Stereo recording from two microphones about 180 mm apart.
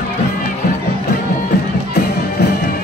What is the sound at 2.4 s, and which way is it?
Music, 70° left (ahead or behind).